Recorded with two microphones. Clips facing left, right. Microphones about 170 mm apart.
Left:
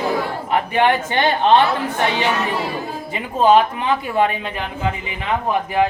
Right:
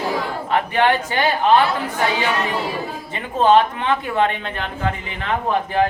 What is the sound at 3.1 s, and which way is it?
Speech, 10° left (ahead or behind).